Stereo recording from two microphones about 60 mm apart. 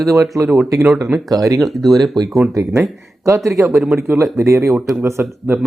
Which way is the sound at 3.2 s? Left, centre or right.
Right.